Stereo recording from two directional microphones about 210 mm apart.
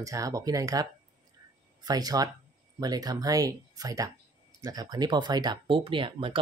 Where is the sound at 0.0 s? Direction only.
15° right (ahead or behind).